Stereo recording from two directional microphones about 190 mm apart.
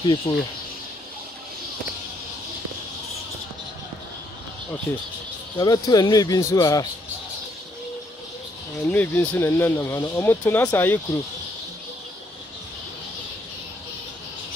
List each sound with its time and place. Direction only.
0.3 s speech: 25° left (ahead or behind)
4.9 s speech: 10° left (ahead or behind)
5.6 s speech: 20° left (ahead or behind)
8.8 s speech: 10° left (ahead or behind)